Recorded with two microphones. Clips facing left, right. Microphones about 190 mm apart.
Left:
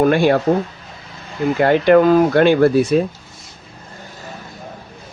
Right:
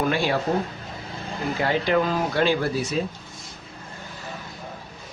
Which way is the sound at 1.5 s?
60° left (ahead or behind).